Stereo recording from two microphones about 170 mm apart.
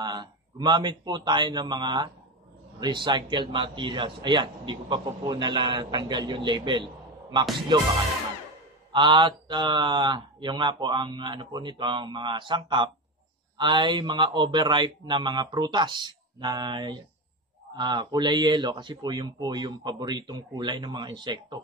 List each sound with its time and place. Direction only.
0.0 s a man's voice: 25° right (ahead or behind)
8.9 s speech: 30° right (ahead or behind)